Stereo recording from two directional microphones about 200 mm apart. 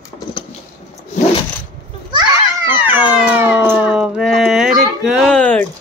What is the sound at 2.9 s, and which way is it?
Cat, 5° right (ahead or behind).